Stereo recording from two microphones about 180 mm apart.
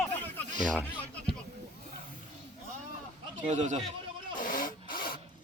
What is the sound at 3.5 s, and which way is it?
Speech, 40° right (ahead or behind).